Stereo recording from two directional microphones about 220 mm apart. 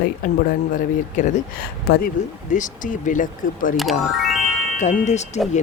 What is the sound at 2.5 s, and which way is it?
Speech, 35° left (ahead or behind).